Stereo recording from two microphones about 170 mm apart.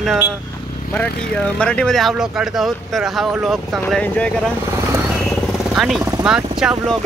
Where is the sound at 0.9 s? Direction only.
10° left (ahead or behind).